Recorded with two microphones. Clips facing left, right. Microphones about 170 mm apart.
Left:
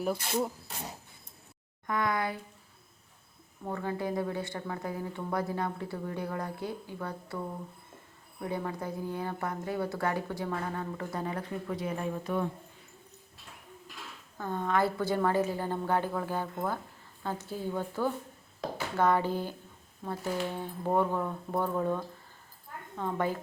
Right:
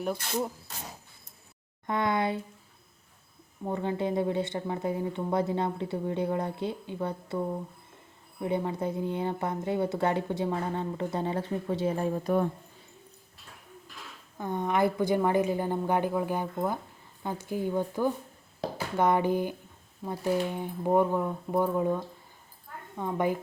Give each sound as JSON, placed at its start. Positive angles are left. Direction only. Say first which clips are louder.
{"t": 0.0, "sound": "speech", "louder": "even", "side_deg": 0}
{"t": 1.9, "sound": "a woman's voice", "louder": "right 3 dB", "side_deg": -25}
{"t": 3.6, "sound": "a woman's voice", "louder": "right 4 dB", "side_deg": -20}
{"t": 14.3, "sound": "a woman's voice", "louder": "right 2 dB", "side_deg": -15}